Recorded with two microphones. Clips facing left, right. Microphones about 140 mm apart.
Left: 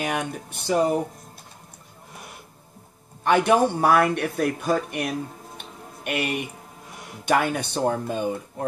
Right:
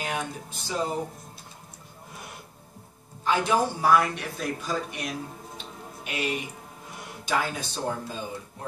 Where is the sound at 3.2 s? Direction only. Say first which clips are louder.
Left 5 dB; 65° left (ahead or behind).